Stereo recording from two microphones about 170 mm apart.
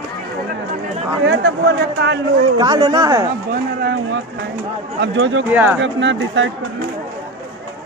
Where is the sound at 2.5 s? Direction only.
25° right (ahead or behind).